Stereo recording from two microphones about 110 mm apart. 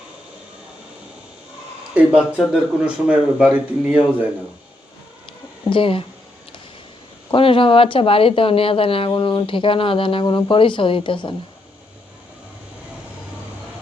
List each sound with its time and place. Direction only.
2.0 s speech: 10° right (ahead or behind)
5.6 s speech: 50° left (ahead or behind)
7.3 s speech: 50° left (ahead or behind)